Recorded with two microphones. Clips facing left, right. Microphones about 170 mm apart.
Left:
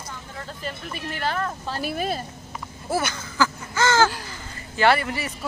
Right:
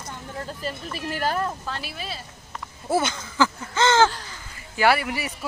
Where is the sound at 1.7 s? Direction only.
50° left (ahead or behind).